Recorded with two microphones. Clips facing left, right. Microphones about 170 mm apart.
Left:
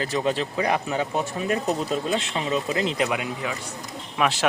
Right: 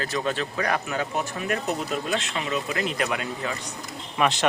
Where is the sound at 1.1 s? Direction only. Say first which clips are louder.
Left 3 dB; 30° left (ahead or behind); by 3.5 s 15° left (ahead or behind).